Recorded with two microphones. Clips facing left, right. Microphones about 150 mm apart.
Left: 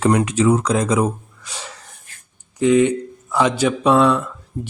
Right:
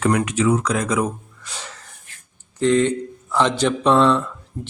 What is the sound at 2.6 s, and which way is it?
A man's voice, 10° left (ahead or behind).